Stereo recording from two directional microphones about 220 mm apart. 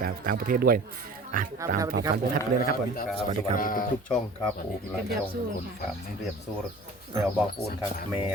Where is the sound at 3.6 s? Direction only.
40° left (ahead or behind).